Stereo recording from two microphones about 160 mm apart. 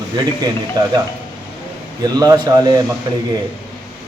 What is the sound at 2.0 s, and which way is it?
Speech, 25° right (ahead or behind).